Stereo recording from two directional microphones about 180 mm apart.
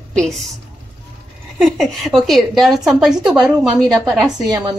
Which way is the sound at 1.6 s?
Centre (ahead or behind).